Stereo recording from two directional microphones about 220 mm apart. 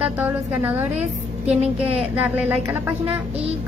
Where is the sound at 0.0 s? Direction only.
5° right (ahead or behind).